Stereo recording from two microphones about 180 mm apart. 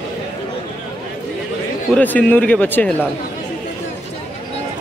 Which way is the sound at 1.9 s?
10° left (ahead or behind).